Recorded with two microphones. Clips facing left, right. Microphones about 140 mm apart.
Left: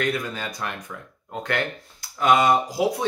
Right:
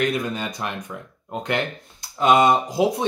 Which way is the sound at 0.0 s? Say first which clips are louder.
Right 3 dB; 20° right (ahead or behind).